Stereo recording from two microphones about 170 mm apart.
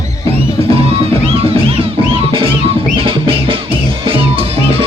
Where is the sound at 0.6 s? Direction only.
35° right (ahead or behind).